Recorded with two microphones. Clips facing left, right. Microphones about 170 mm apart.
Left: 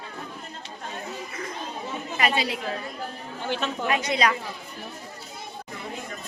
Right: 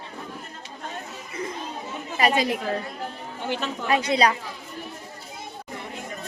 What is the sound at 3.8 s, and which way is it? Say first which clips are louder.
Speech: right 4 dB; 35° right (ahead or behind).